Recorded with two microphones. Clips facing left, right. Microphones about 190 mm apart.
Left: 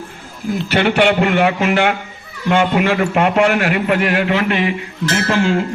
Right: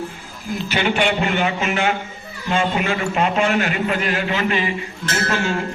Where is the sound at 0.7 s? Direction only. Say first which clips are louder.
Left 6 dB; 60° left (ahead or behind).